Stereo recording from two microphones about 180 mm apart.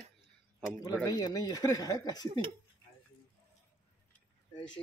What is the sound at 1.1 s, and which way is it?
Speech, 20° left (ahead or behind).